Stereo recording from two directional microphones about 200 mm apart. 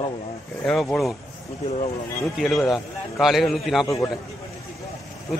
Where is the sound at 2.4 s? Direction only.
Centre (ahead or behind).